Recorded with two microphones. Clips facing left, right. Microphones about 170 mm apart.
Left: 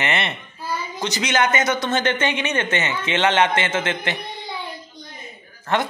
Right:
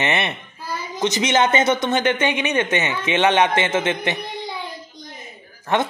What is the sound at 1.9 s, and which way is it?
Speech, 15° right (ahead or behind).